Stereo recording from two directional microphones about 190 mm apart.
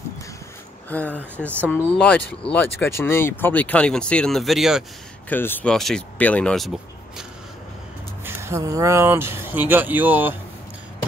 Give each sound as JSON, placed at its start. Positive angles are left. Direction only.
{"t": 0.8, "sound": "speech", "side_deg": 10}
{"t": 5.3, "sound": "speech", "side_deg": 10}
{"t": 8.2, "sound": "speech", "side_deg": -10}